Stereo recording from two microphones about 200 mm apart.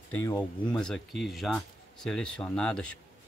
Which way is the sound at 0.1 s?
10° left (ahead or behind).